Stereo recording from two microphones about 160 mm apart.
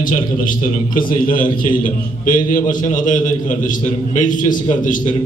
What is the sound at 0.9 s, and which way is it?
A man's voice, 60° left (ahead or behind).